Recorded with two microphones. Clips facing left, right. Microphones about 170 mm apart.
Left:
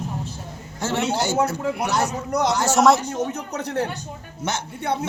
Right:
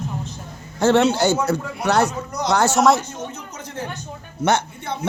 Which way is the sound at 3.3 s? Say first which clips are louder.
Left 7 dB; 70° left (ahead or behind).